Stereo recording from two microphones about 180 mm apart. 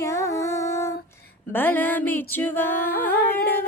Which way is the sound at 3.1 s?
55° left (ahead or behind).